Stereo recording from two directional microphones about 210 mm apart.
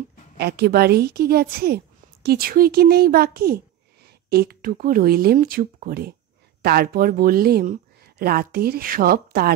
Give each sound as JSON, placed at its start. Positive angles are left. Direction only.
{"t": 0.4, "sound": "a child's voice", "side_deg": -50}